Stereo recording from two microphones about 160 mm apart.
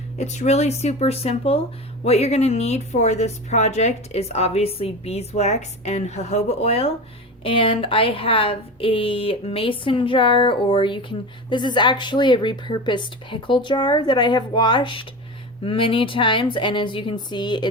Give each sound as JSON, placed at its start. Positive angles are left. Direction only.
{"t": 0.2, "sound": "a woman's voice", "side_deg": 45}